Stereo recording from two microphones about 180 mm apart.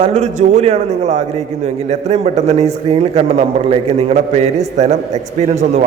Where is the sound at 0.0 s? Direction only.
40° right (ahead or behind).